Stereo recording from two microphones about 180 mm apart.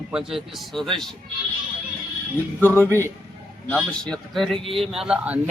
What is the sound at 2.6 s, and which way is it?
A man's voice, 10° left (ahead or behind).